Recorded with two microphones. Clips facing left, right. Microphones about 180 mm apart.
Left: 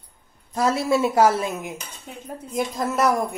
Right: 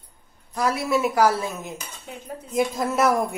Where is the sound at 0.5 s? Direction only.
25° left (ahead or behind).